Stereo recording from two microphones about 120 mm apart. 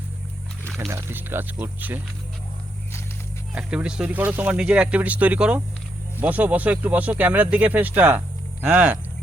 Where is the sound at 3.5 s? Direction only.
10° right (ahead or behind).